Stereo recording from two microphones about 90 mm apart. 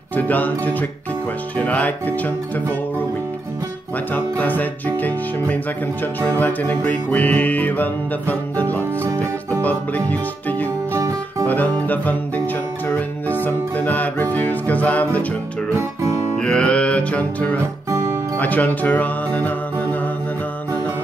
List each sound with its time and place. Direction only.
0.1 s music: 20° left (ahead or behind)
1.6 s speech: 15° left (ahead or behind)
4.1 s music: 20° left (ahead or behind)
9.0 s music: 30° right (ahead or behind)
9.6 s music: 20° left (ahead or behind)
11.0 s music: 35° right (ahead or behind)
11.4 s music: 20° left (ahead or behind)
16.3 s music: 10° left (ahead or behind)
17.8 s music: 35° right (ahead or behind)
18.4 s music: 20° left (ahead or behind)